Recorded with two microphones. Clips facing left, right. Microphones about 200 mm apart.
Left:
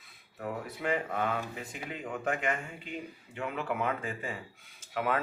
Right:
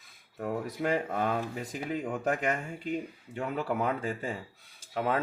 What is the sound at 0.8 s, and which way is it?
Speech, 40° right (ahead or behind).